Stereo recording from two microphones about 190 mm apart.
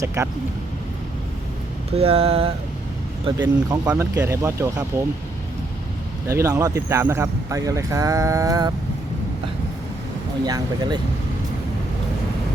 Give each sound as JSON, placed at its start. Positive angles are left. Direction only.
{"t": 0.0, "sound": "speech", "side_deg": -15}
{"t": 2.0, "sound": "mantra", "side_deg": -30}
{"t": 3.4, "sound": "speech", "side_deg": -10}
{"t": 6.2, "sound": "speech", "side_deg": -15}
{"t": 10.4, "sound": "speech", "side_deg": -20}